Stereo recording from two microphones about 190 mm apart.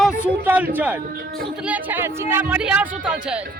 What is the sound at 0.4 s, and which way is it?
A man's voice, 10° right (ahead or behind).